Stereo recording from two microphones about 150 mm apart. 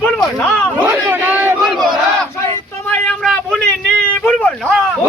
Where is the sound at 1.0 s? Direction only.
15° right (ahead or behind).